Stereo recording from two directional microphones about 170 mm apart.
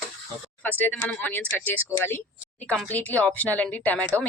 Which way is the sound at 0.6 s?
10° left (ahead or behind).